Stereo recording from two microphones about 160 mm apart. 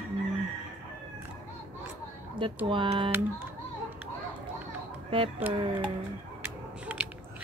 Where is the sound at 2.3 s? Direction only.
30° right (ahead or behind).